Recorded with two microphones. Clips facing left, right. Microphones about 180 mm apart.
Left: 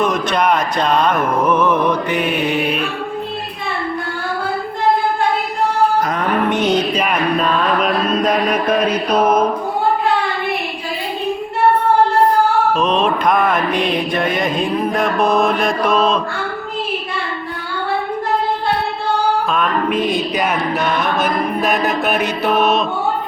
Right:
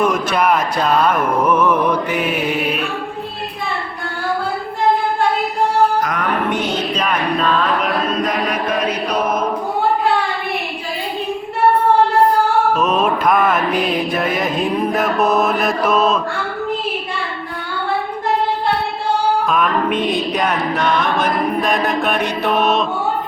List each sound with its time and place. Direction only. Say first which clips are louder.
0.0 s speech: even; 10° right (ahead or behind)
6.1 s music: left 2 dB; 25° left (ahead or behind)
12.7 s mantra: even; 5° right (ahead or behind)
19.5 s mantra: right 1 dB; centre (ahead or behind)